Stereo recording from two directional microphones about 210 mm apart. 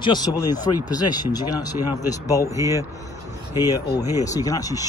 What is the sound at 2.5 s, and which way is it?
Speech, 15° right (ahead or behind).